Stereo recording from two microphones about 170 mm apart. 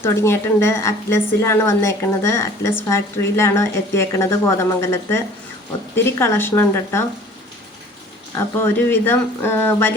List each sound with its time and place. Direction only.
0.0 s a woman's voice: 15° left (ahead or behind)
8.6 s a woman's voice: 15° left (ahead or behind)